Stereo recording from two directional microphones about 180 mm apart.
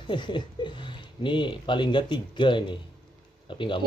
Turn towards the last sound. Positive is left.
turn(degrees=30)  # may be behind; listen again after turning